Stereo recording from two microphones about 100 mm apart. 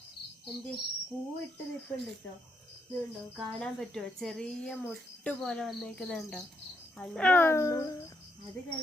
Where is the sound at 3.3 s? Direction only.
5° left (ahead or behind).